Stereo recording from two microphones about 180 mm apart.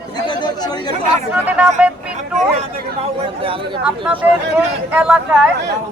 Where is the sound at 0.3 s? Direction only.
25° left (ahead or behind).